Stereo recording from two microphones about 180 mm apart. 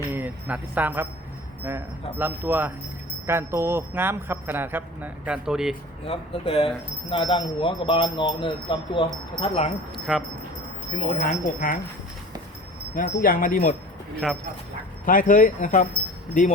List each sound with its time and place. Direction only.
0.1 s speech: 10° right (ahead or behind)
2.1 s speech: 10° right (ahead or behind)
6.1 s speech: 30° left (ahead or behind)
9.9 s speech: centre (ahead or behind)
11.2 s speech: 50° left (ahead or behind)
13.0 s speech: 50° left (ahead or behind)
14.2 s speech: centre (ahead or behind)
15.0 s speech: 50° left (ahead or behind)